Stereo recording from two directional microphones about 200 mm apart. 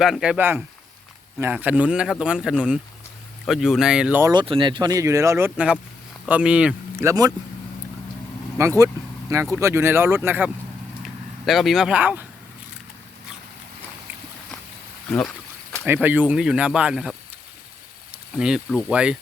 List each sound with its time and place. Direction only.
0.0 s speech: 5° right (ahead or behind)
4.3 s speech: 25° right (ahead or behind)
8.6 s speech: 15° right (ahead or behind)
15.9 s speech: 10° right (ahead or behind)
18.3 s speech: 5° right (ahead or behind)